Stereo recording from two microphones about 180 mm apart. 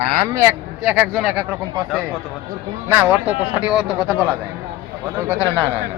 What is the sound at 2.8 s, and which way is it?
Speech, 10° right (ahead or behind).